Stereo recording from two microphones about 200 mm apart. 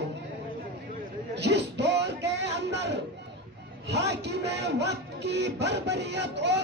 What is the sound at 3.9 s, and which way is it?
Speech, 60° right (ahead or behind).